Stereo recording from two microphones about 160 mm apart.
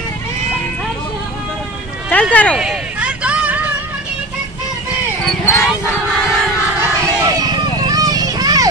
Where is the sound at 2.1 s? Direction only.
10° left (ahead or behind).